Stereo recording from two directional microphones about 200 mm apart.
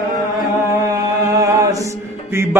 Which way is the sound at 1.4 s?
15° right (ahead or behind).